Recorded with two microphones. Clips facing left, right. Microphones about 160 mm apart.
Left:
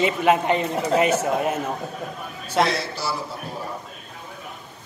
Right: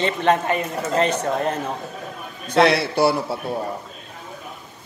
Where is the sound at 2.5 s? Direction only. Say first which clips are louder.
Right 6 dB; 65° right (ahead or behind).